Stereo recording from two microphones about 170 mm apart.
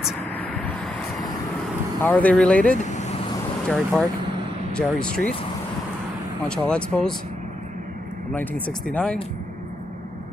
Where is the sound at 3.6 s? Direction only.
5° left (ahead or behind).